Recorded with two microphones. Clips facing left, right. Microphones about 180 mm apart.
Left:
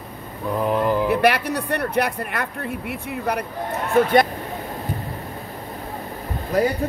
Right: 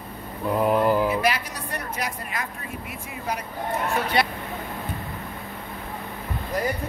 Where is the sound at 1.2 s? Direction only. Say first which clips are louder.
Left 7 dB; 65° left (ahead or behind).